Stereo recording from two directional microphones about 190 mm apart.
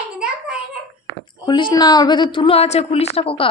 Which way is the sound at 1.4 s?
25° left (ahead or behind).